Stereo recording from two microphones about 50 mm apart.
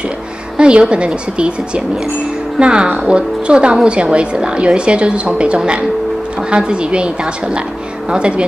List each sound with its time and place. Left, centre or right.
0.6 s a woman's voice: right
2.6 s a woman's voice: centre